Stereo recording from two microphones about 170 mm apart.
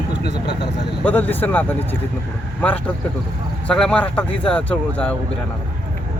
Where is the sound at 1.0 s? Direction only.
10° left (ahead or behind).